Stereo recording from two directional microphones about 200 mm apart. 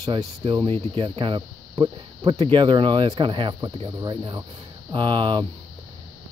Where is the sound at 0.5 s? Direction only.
25° right (ahead or behind).